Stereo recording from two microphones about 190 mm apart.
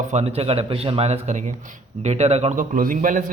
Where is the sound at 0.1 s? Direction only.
35° right (ahead or behind).